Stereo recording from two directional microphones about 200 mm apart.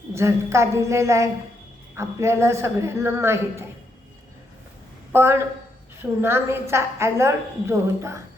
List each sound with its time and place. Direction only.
0.1 s a woman's voice: 15° right (ahead or behind)
5.1 s a woman's voice: 10° right (ahead or behind)